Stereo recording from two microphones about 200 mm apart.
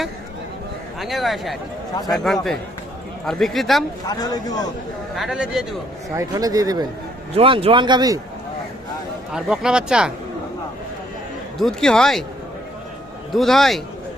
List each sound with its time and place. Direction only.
0.9 s speech: centre (ahead or behind)
4.0 s speech: 20° left (ahead or behind)
5.1 s speech: centre (ahead or behind)
6.1 s speech: 15° right (ahead or behind)
7.3 s speech: 30° right (ahead or behind)
9.3 s speech: 5° right (ahead or behind)
11.5 s speech: centre (ahead or behind)
13.3 s speech: centre (ahead or behind)